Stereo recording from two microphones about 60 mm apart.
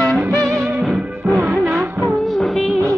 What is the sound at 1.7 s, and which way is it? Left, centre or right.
Music of bollywood, centre.